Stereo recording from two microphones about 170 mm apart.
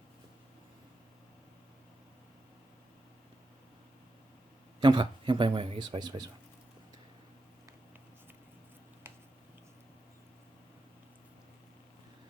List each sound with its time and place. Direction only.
4.8 s speech: 25° right (ahead or behind)